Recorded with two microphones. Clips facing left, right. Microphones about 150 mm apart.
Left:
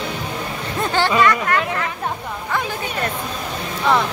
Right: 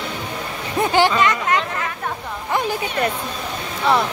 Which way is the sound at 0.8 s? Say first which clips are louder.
Even; 15° right (ahead or behind).